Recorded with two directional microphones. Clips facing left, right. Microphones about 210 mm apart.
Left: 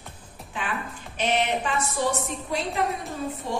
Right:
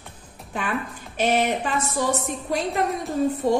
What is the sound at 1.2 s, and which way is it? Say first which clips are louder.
Speech: right 3 dB; 40° right (ahead or behind).